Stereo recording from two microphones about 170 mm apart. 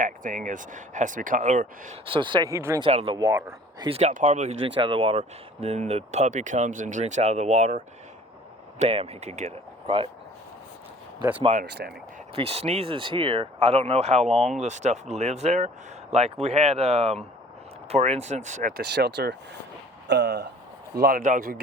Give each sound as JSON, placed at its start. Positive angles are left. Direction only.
{"t": 0.0, "sound": "speech", "side_deg": -50}
{"t": 2.0, "sound": "speech", "side_deg": -30}
{"t": 2.8, "sound": "speech", "side_deg": -35}
{"t": 3.2, "sound": "speech", "side_deg": -20}
{"t": 3.8, "sound": "speech", "side_deg": -40}
{"t": 4.7, "sound": "speech", "side_deg": -30}
{"t": 11.6, "sound": "speech", "side_deg": -75}
{"t": 12.3, "sound": "speech", "side_deg": -35}
{"t": 18.8, "sound": "speech", "side_deg": -75}
{"t": 20.1, "sound": "speech", "side_deg": -90}
{"t": 20.9, "sound": "speech", "side_deg": -60}